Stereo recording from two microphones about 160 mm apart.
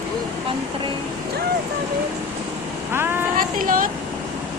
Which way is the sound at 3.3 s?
60° right (ahead or behind).